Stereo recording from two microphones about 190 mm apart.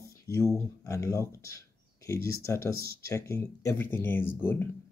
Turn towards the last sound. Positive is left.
turn(degrees=10)  # may be behind; listen again after turning